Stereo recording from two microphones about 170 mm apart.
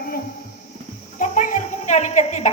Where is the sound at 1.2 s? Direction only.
50° left (ahead or behind).